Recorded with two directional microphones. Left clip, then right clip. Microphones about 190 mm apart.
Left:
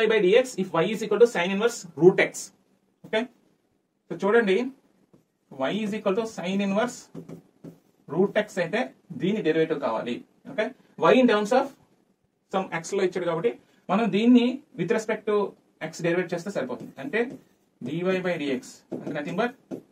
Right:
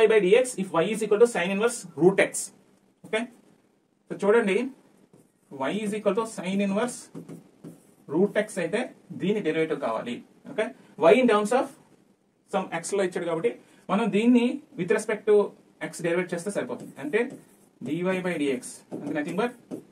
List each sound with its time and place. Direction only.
0.0 s speech: 15° right (ahead or behind)
4.1 s speech: 15° right (ahead or behind)
8.1 s speech: 10° right (ahead or behind)